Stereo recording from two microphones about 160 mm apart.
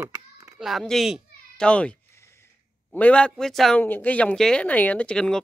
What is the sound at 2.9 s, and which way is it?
Speech, 10° left (ahead or behind).